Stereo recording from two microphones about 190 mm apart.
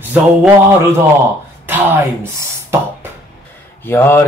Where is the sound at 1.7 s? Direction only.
10° right (ahead or behind).